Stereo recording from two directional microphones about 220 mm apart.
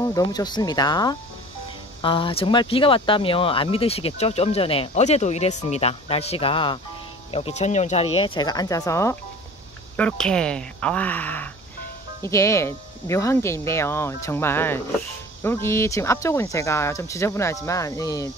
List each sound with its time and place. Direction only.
0.0 s speech: 15° left (ahead or behind)